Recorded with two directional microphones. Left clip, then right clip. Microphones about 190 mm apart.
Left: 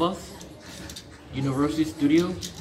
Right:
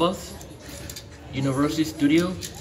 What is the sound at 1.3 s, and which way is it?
A man's voice, 20° right (ahead or behind).